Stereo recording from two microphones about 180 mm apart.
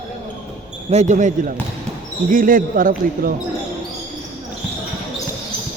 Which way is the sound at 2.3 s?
50° right (ahead or behind).